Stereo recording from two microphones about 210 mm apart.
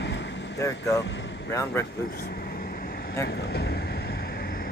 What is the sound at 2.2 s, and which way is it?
Vehicle, 45° left (ahead or behind).